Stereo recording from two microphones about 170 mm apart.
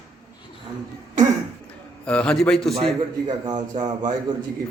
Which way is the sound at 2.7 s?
30° right (ahead or behind).